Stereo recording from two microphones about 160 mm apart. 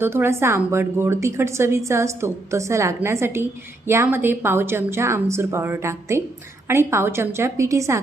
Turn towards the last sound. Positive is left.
turn(degrees=-20)  # may be behind; listen again after turning